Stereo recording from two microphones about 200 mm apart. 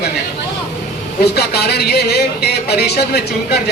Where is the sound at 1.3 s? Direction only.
55° left (ahead or behind).